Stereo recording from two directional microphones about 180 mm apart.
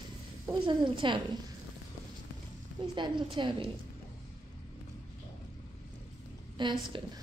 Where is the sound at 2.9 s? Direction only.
25° right (ahead or behind).